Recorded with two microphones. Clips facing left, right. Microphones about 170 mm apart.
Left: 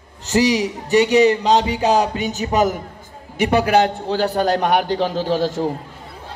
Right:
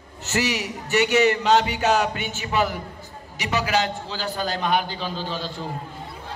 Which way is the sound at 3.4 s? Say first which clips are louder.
Left 8 dB; 55° left (ahead or behind).